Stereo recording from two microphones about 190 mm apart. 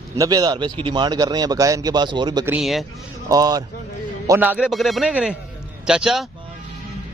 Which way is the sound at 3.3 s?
20° right (ahead or behind).